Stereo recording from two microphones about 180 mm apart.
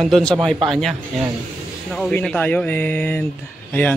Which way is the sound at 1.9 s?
5° left (ahead or behind).